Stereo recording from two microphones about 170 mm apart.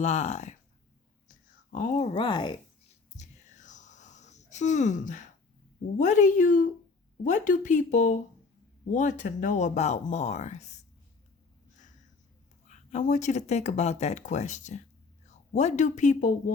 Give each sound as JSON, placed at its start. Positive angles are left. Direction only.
{"t": 0.0, "sound": "speech", "side_deg": 40}
{"t": 1.7, "sound": "speech", "side_deg": 50}
{"t": 2.1, "sound": "speech", "side_deg": 25}
{"t": 3.2, "sound": "whispering", "side_deg": 45}
{"t": 6.0, "sound": "speech", "side_deg": 45}
{"t": 12.6, "sound": "speech", "side_deg": 45}